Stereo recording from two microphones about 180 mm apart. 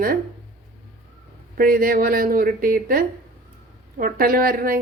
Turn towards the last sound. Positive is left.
turn(degrees=-55)  # may be behind; listen again after turning